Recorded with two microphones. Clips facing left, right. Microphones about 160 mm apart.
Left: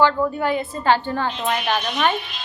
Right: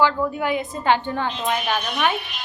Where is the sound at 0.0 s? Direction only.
10° right (ahead or behind).